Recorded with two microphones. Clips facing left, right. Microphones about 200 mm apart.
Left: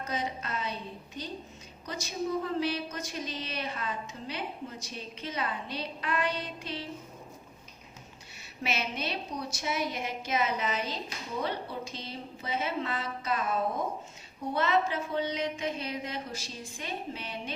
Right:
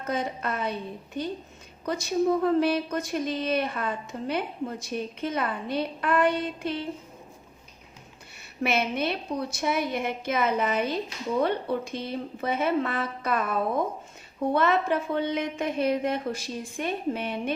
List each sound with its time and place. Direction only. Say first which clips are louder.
0.0 s a woman's voice: right 5 dB; 55° right (ahead or behind)
8.6 s a woman's voice: right 8 dB; 55° right (ahead or behind)
14.5 s a woman's voice: right 4 dB; 55° right (ahead or behind)